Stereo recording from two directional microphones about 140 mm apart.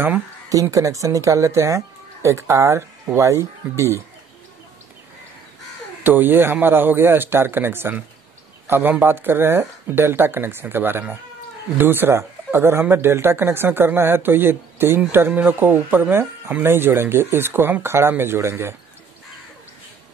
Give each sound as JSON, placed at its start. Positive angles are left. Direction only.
{"t": 0.5, "sound": "speech", "side_deg": -25}
{"t": 6.0, "sound": "speech", "side_deg": -15}